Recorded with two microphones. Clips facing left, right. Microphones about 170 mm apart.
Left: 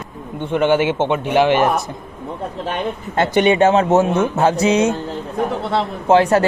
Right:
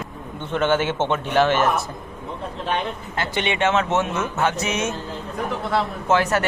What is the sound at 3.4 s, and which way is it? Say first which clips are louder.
Speech: left 8 dB; 40° left (ahead or behind).